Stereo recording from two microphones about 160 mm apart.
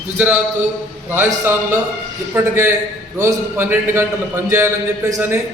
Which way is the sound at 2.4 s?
15° right (ahead or behind).